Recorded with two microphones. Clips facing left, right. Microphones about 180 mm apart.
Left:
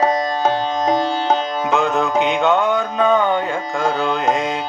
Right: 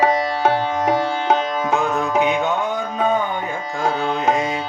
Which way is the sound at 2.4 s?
75° left (ahead or behind).